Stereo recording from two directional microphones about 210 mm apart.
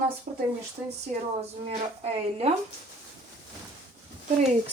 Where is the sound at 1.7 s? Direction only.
30° right (ahead or behind).